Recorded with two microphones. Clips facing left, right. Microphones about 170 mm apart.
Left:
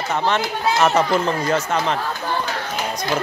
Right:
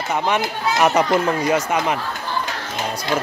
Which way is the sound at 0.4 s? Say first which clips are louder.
Even; 15° right (ahead or behind).